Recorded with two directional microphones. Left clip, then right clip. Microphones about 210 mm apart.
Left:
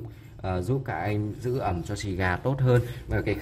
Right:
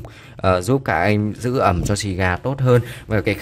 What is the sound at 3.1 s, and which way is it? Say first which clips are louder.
Speech: right 9 dB; 45° right (ahead or behind).